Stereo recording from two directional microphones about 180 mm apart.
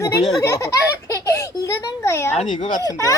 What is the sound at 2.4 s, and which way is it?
Speech, 40° left (ahead or behind).